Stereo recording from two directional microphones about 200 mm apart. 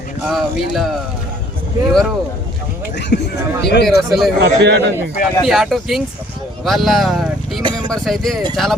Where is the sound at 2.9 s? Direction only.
60° left (ahead or behind).